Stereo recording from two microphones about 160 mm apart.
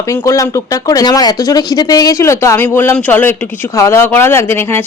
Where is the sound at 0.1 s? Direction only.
20° left (ahead or behind).